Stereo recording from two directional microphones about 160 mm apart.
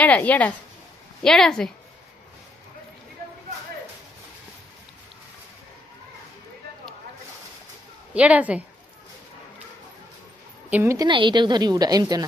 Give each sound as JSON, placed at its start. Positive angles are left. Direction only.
{"t": 0.0, "sound": "a woman's voice", "side_deg": 10}
{"t": 8.1, "sound": "speech", "side_deg": -10}
{"t": 10.7, "sound": "speech", "side_deg": -15}
{"t": 11.1, "sound": "a woman's voice", "side_deg": -30}